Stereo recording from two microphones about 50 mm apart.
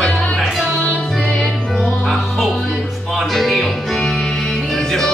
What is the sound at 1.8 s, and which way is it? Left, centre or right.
Music, centre.